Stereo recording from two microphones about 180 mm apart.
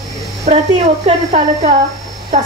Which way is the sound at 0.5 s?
35° right (ahead or behind).